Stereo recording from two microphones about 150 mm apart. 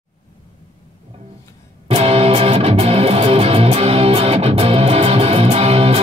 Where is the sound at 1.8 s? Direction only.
40° right (ahead or behind).